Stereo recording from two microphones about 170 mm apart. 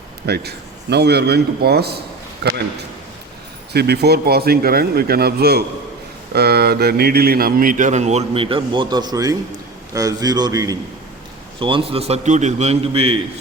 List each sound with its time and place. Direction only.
0.3 s a man's voice: 70° right (ahead or behind)
3.7 s a man's voice: 70° right (ahead or behind); by 10.8 s 20° right (ahead or behind)
11.6 s a man's voice: 30° right (ahead or behind)